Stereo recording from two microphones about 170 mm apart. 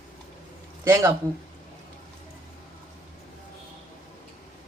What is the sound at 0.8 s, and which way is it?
Speech, 15° right (ahead or behind).